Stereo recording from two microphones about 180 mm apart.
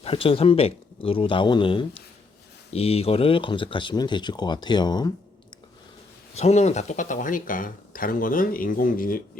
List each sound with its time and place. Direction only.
0.0 s speech: 30° left (ahead or behind)
6.3 s speech: 35° left (ahead or behind)